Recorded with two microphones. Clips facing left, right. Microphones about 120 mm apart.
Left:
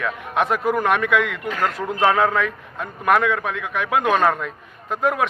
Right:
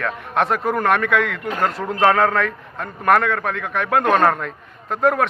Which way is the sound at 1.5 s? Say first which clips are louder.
Right 2 dB; 30° right (ahead or behind).